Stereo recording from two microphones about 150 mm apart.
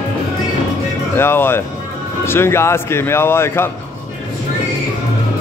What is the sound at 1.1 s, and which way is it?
Speech, 15° left (ahead or behind).